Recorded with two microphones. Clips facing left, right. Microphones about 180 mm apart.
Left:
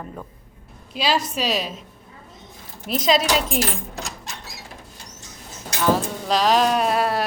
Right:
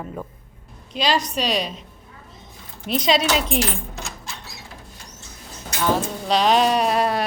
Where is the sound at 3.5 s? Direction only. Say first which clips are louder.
Right 1 dB; 40° left (ahead or behind).